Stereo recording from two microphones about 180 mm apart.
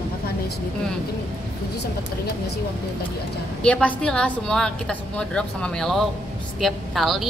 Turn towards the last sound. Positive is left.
turn(degrees=0)  # may be behind; listen again after turning